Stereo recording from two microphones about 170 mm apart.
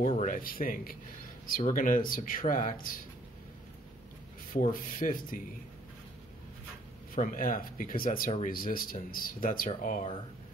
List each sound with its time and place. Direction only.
0.0 s speech: 45° left (ahead or behind)
4.6 s speech: 50° left (ahead or behind)
7.2 s speech: 55° left (ahead or behind)